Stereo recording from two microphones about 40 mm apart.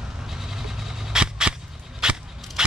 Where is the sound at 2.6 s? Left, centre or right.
Centre.